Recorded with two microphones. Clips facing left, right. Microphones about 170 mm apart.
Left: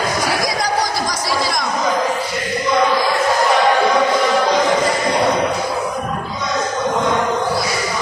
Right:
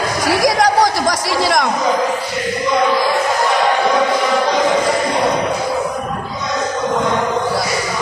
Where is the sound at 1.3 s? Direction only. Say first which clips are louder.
Right 4 dB; 75° right (ahead or behind).